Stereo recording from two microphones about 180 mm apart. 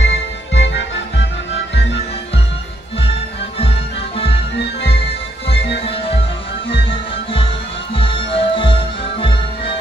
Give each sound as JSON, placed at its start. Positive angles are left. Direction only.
{"t": 0.0, "sound": "music", "side_deg": 85}
{"t": 4.8, "sound": "music", "side_deg": 30}